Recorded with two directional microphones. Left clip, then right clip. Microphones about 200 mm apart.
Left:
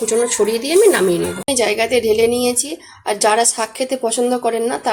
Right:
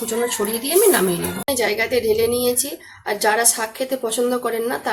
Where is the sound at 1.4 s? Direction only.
30° left (ahead or behind).